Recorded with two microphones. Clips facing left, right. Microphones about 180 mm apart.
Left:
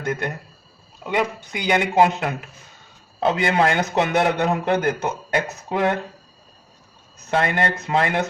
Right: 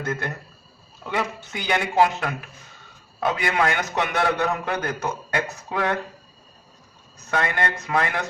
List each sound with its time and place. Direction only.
0.0 s a man's voice: 15° left (ahead or behind)
7.3 s a man's voice: 25° left (ahead or behind)